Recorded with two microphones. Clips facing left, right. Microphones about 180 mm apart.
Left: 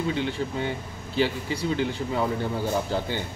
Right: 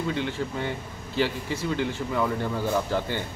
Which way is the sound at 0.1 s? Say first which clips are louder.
Left 1 dB; 15° left (ahead or behind).